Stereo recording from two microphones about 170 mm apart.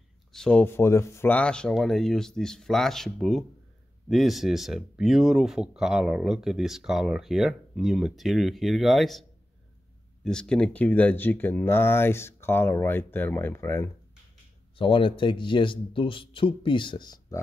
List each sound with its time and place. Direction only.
0.3 s speech: 5° left (ahead or behind)
10.2 s speech: 5° left (ahead or behind)
14.8 s speech: 30° left (ahead or behind)